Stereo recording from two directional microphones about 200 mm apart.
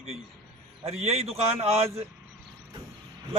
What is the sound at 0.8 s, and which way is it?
A man's voice, 30° right (ahead or behind).